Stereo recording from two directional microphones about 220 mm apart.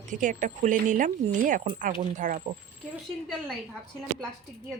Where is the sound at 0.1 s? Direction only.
35° right (ahead or behind).